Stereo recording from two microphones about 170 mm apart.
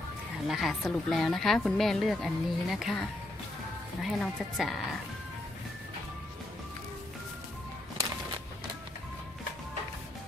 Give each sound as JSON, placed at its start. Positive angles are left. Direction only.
{"t": 0.5, "sound": "a woman's voice", "side_deg": 0}
{"t": 4.0, "sound": "a woman's voice", "side_deg": 0}